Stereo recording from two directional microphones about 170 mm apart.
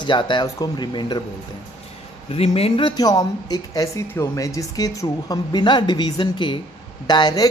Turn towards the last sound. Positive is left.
turn(degrees=25)  # may be behind; listen again after turning